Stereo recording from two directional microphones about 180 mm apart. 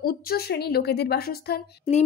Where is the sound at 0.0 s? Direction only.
55° left (ahead or behind).